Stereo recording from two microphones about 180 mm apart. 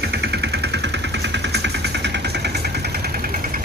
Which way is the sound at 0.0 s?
65° right (ahead or behind).